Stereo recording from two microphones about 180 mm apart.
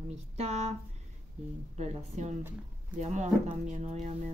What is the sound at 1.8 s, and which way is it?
Speech, 40° right (ahead or behind).